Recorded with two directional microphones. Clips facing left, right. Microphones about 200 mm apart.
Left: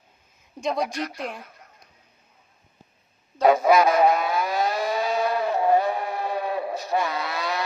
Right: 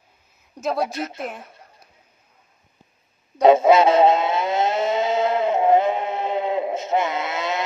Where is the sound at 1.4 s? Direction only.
30° right (ahead or behind).